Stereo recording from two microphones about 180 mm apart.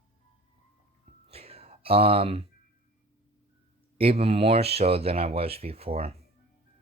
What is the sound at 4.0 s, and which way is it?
A man's voice, 35° right (ahead or behind).